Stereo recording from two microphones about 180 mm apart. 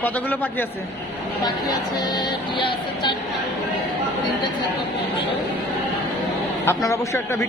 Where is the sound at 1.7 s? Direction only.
25° left (ahead or behind).